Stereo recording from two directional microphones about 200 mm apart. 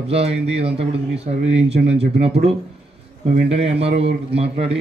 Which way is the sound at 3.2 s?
30° right (ahead or behind).